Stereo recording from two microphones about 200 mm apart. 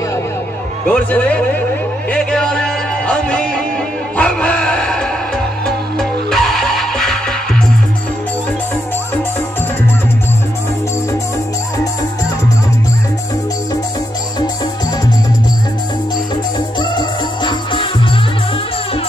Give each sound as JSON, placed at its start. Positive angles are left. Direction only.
{"t": 0.8, "sound": "a man's voice", "side_deg": 5}
{"t": 2.0, "sound": "music", "side_deg": 5}
{"t": 16.5, "sound": "music", "side_deg": 20}